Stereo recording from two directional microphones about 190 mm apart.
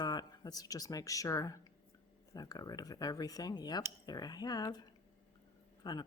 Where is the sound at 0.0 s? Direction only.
20° left (ahead or behind).